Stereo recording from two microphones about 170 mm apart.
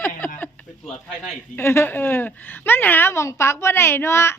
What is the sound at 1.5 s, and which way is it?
A woman's voice, 15° left (ahead or behind).